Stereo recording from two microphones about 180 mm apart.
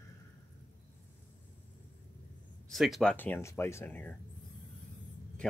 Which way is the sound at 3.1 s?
10° left (ahead or behind).